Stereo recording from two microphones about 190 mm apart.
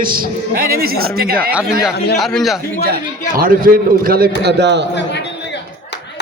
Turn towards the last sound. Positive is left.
turn(degrees=-65)  # may be behind; listen again after turning